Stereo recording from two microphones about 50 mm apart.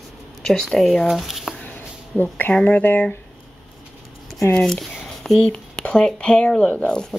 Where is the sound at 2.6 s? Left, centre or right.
Left.